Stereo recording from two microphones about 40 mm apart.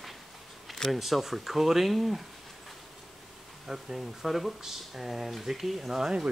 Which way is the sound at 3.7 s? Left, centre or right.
Centre.